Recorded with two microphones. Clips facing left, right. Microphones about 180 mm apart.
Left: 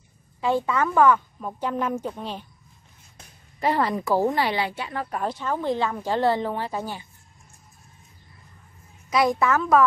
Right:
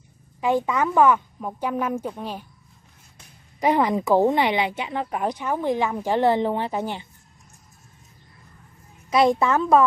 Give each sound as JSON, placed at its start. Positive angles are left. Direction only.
{"t": 0.4, "sound": "a woman's voice", "side_deg": -15}
{"t": 3.5, "sound": "a woman's voice", "side_deg": -15}
{"t": 9.1, "sound": "a woman's voice", "side_deg": -25}